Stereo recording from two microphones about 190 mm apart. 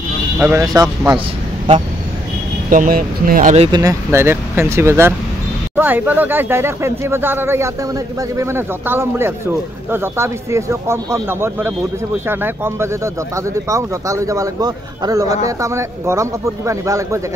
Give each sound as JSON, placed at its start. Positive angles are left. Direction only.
{"t": 0.4, "sound": "a man's voice", "side_deg": -15}
{"t": 2.7, "sound": "speech", "side_deg": -45}
{"t": 3.7, "sound": "a man's voice", "side_deg": -15}